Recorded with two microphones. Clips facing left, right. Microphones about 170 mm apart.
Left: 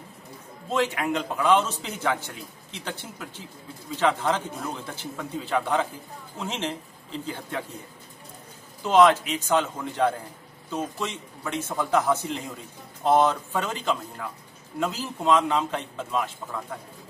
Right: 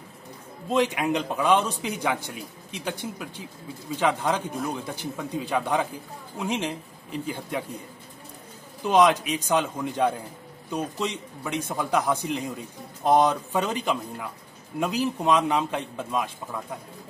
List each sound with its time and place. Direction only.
0.7 s a man's voice: 15° right (ahead or behind)
8.8 s a man's voice: 15° right (ahead or behind)